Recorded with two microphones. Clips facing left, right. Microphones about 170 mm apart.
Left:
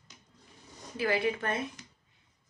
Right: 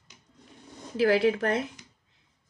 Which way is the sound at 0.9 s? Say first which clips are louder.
Right 7 dB; 90° right.